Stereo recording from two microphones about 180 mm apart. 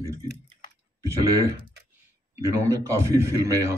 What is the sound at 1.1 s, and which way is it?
Clicking, 15° right (ahead or behind).